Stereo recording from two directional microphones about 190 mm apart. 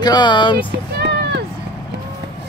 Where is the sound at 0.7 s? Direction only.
60° right (ahead or behind).